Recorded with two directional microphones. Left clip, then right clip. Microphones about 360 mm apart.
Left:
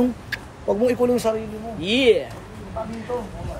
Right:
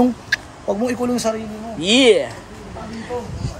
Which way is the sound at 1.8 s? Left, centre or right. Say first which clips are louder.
Right 5 dB; centre.